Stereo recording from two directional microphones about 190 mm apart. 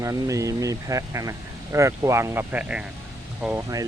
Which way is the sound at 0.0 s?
15° right (ahead or behind).